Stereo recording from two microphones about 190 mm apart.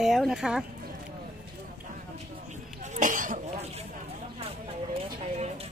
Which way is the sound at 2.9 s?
45° right (ahead or behind).